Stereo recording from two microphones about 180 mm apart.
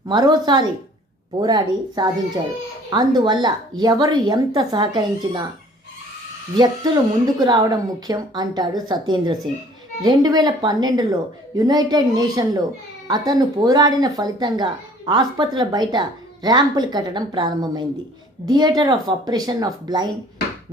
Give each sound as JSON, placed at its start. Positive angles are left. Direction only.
{"t": 0.1, "sound": "speech", "side_deg": -25}
{"t": 6.6, "sound": "speech", "side_deg": -25}